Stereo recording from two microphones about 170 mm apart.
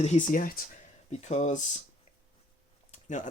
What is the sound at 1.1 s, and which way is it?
Speech, 45° left (ahead or behind).